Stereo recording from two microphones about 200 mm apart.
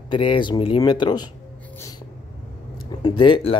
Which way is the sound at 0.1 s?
25° left (ahead or behind).